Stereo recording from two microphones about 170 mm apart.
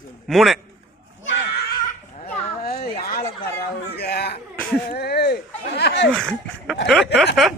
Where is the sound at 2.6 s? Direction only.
65° left (ahead or behind).